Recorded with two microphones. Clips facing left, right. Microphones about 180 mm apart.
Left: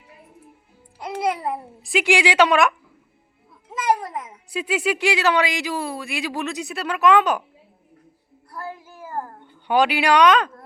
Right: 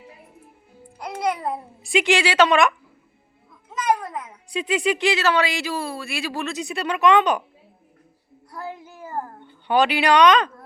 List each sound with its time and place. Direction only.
1.3 s a woman's voice: 5° left (ahead or behind)
4.3 s a woman's voice: 5° left (ahead or behind)
6.7 s speech: centre (ahead or behind)
8.4 s child singing: 20° right (ahead or behind)
9.6 s a woman's voice: 10° left (ahead or behind)